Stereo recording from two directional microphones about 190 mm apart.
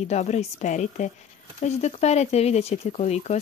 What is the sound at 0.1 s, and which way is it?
Speech, 35° left (ahead or behind).